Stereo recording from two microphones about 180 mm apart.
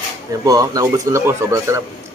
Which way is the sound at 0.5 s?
20° right (ahead or behind).